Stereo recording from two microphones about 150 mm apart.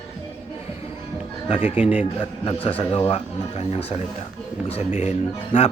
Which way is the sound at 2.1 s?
35° left (ahead or behind).